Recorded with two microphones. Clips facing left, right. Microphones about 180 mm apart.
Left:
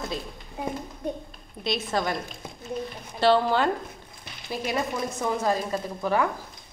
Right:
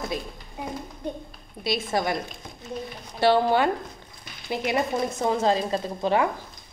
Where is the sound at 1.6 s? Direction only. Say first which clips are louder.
Right 1 dB; 10° right (ahead or behind).